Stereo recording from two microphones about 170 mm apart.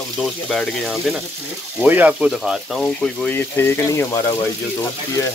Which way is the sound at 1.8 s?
10° right (ahead or behind).